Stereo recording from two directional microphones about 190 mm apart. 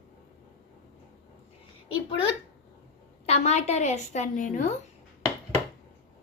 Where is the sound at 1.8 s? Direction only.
25° left (ahead or behind); by 4.7 s 40° left (ahead or behind).